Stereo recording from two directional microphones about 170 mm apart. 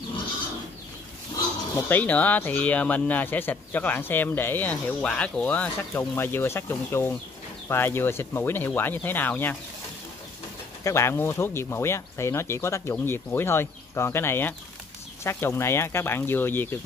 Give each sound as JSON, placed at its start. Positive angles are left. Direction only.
{"t": 1.9, "sound": "speech", "side_deg": 10}
{"t": 10.8, "sound": "speech", "side_deg": 15}